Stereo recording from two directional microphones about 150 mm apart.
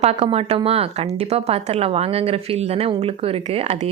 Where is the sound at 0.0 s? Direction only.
40° right (ahead or behind).